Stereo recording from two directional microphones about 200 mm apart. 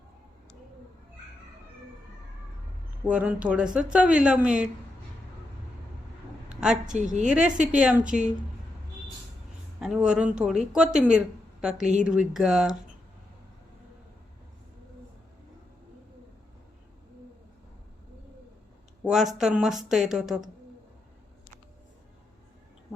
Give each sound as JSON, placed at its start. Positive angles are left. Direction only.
{"t": 3.1, "sound": "speech", "side_deg": -5}
{"t": 6.5, "sound": "a woman's voice", "side_deg": -5}
{"t": 7.0, "sound": "a woman's voice", "side_deg": -40}
{"t": 7.3, "sound": "speech", "side_deg": -5}
{"t": 9.8, "sound": "a woman's voice", "side_deg": -5}
{"t": 19.0, "sound": "speech", "side_deg": 0}